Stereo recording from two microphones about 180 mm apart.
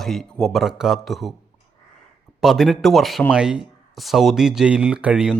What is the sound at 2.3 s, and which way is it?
Speech, centre (ahead or behind).